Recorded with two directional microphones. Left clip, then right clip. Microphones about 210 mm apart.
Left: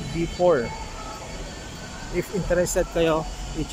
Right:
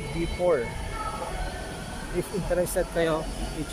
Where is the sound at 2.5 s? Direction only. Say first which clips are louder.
Left 4 dB; 5° left (ahead or behind).